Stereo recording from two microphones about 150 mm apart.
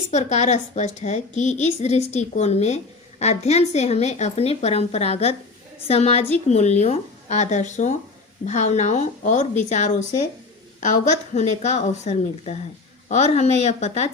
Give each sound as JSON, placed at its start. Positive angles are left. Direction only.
{"t": 0.1, "sound": "a woman's voice", "side_deg": 50}